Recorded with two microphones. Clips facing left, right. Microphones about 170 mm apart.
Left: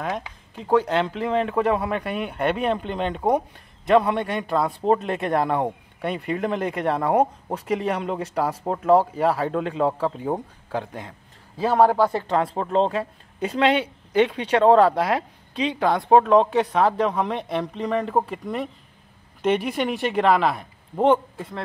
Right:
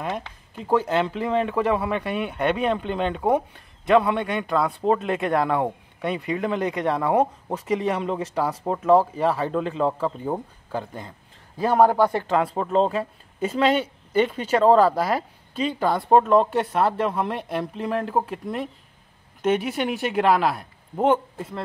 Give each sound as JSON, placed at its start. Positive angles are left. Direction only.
{"t": 0.0, "sound": "speech", "side_deg": 0}
{"t": 3.2, "sound": "speech", "side_deg": 15}
{"t": 3.8, "sound": "speech", "side_deg": 0}
{"t": 10.7, "sound": "a sound", "side_deg": 0}
{"t": 11.7, "sound": "speech", "side_deg": -15}
{"t": 12.3, "sound": "speech", "side_deg": 0}